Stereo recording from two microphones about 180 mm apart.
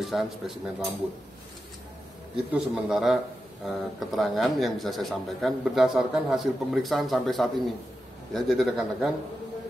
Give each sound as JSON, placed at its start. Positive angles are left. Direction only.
{"t": 0.0, "sound": "speech", "side_deg": 0}
{"t": 2.5, "sound": "speech", "side_deg": -5}